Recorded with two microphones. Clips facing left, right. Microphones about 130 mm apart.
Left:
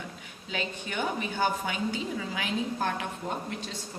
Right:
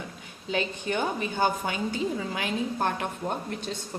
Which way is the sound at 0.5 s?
40° right (ahead or behind).